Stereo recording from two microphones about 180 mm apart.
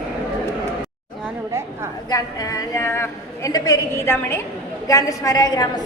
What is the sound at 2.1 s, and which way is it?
A woman's voice, 20° left (ahead or behind).